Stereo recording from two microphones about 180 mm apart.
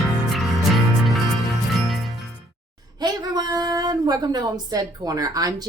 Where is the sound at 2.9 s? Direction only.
25° right (ahead or behind).